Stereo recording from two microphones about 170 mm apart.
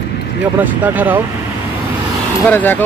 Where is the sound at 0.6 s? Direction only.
10° right (ahead or behind).